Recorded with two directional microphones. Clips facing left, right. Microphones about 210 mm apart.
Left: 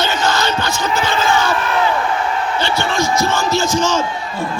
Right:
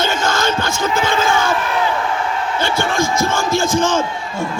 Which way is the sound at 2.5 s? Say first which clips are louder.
Right 2 dB; 50° right (ahead or behind).